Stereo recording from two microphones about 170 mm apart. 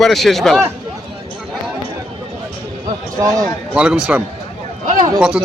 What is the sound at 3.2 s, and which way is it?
Speech, 20° right (ahead or behind).